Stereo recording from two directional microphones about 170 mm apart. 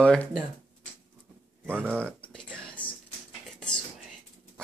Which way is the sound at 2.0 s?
5° left (ahead or behind).